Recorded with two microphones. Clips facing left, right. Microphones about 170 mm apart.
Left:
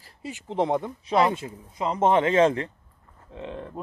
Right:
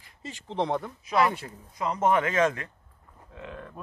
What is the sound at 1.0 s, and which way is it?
Speech, 25° left (ahead or behind).